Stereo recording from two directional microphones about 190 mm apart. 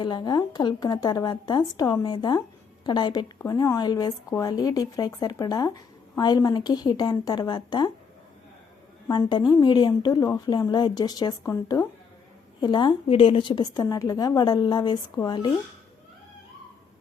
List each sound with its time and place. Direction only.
0.0 s speech: 25° left (ahead or behind)
9.0 s speech: 25° left (ahead or behind)